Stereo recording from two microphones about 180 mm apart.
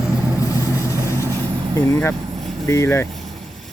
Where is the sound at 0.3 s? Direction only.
15° left (ahead or behind).